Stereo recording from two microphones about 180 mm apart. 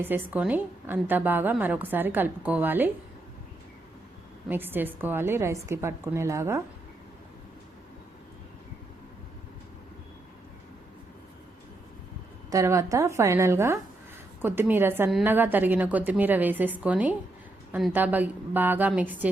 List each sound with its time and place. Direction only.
0.0 s a woman's voice: 10° right (ahead or behind)
4.4 s a woman's voice: 10° right (ahead or behind)
12.5 s a woman's voice: 15° right (ahead or behind)